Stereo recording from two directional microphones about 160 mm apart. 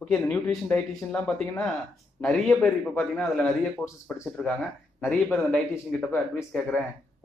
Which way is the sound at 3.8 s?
15° left (ahead or behind).